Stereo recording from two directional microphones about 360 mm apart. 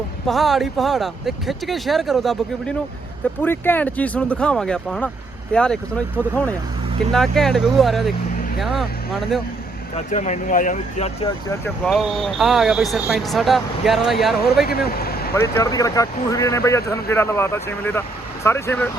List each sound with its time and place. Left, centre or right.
0.3 s speech: centre
9.9 s speech: centre
14.7 s speech: left
15.4 s speech: centre